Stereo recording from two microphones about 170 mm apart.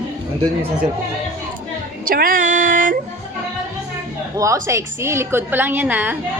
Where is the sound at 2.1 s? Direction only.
55° right (ahead or behind).